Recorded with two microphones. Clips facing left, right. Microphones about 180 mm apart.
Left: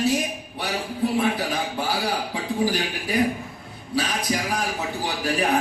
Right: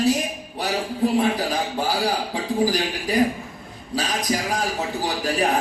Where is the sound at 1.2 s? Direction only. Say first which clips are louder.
Right 2 dB; 40° right (ahead or behind).